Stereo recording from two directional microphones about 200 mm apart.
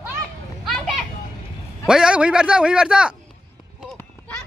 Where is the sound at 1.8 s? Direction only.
5° right (ahead or behind).